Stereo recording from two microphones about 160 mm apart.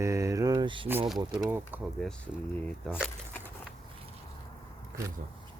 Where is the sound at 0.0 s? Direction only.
20° right (ahead or behind).